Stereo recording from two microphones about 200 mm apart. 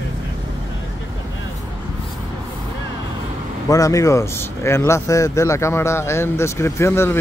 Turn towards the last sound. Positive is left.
turn(degrees=10)  # may be behind; listen again after turning